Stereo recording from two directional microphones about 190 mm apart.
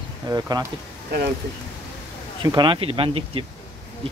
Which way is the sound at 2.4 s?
25° right (ahead or behind).